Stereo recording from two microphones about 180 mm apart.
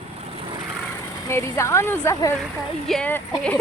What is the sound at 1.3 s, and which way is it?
Speech, 15° left (ahead or behind).